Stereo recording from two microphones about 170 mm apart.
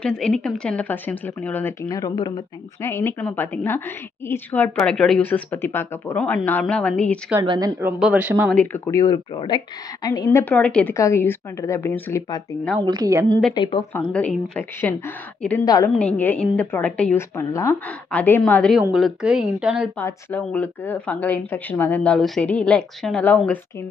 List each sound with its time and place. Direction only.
0.0 s a woman's voice: 5° left (ahead or behind); by 2.4 s 25° left (ahead or behind)
2.8 s a woman's voice: 15° left (ahead or behind)
7.4 s a woman's voice: 25° right (ahead or behind)
7.8 s speech: 10° right (ahead or behind)
8.5 s speech: 10° left (ahead or behind); by 9.6 s 25° left (ahead or behind)
10.3 s a woman's voice: 10° left (ahead or behind)
12.8 s a woman's voice: 20° right (ahead or behind)
13.6 s speech: 30° left (ahead or behind)
14.1 s a woman's voice: 5° left (ahead or behind)
15.6 s speech: 20° left (ahead or behind)
16.0 s a woman's voice: 10° left (ahead or behind)
20.0 s a woman's voice: 10° left (ahead or behind)